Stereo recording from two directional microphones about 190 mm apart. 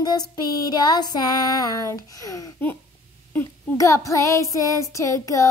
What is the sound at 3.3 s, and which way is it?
Child singing, 15° left (ahead or behind).